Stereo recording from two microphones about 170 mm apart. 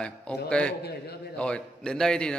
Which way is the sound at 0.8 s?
70° left (ahead or behind).